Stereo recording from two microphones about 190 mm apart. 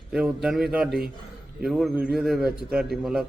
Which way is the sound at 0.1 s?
5° right (ahead or behind).